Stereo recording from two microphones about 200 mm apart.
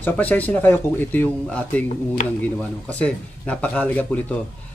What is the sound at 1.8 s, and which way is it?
Speech, 40° left (ahead or behind).